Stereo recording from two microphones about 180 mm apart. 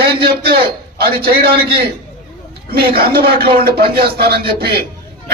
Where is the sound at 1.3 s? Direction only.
60° right (ahead or behind).